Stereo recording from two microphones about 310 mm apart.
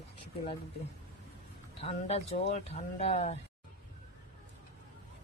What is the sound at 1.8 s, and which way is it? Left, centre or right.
Speech, centre.